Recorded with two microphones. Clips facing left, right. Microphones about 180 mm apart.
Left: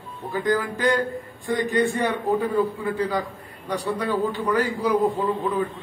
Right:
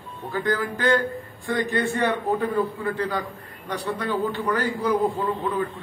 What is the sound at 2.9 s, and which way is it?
Speech, 10° left (ahead or behind).